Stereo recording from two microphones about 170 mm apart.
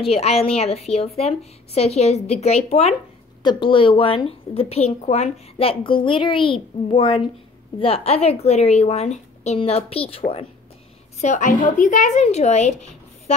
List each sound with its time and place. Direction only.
0.0 s a woman's voice: 35° left (ahead or behind)
11.1 s a woman's voice: 45° left (ahead or behind)